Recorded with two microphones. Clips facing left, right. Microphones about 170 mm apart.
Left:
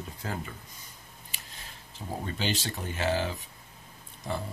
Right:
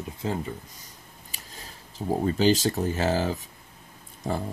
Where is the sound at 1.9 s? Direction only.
40° right (ahead or behind).